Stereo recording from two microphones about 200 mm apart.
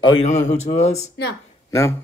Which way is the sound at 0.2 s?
35° left (ahead or behind).